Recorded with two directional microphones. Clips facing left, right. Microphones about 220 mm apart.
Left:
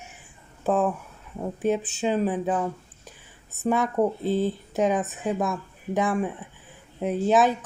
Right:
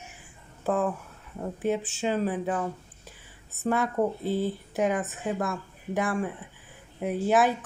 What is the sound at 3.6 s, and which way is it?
A woman's voice, 15° left (ahead or behind).